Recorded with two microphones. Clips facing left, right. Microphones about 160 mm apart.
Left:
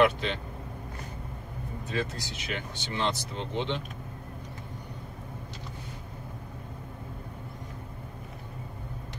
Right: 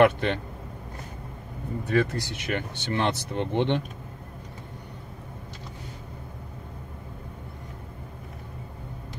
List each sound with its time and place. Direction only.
0.0 s speech: 60° right (ahead or behind)
1.9 s speech: 65° right (ahead or behind)